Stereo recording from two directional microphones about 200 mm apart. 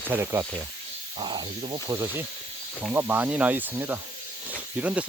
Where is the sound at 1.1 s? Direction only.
25° right (ahead or behind).